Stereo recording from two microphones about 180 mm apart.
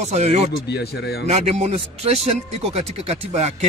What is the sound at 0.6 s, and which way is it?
Speech, 65° left (ahead or behind).